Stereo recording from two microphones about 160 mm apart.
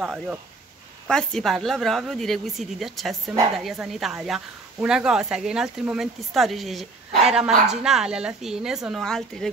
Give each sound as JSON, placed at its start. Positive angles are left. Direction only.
{"t": 0.0, "sound": "speech", "side_deg": -5}
{"t": 1.0, "sound": "speech", "side_deg": 5}